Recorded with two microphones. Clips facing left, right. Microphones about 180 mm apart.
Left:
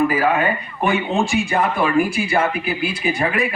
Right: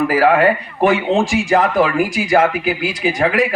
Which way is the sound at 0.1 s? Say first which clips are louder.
Right 6 dB; 85° right.